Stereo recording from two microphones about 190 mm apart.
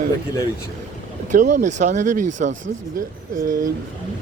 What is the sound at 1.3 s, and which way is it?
Speech, 40° right (ahead or behind).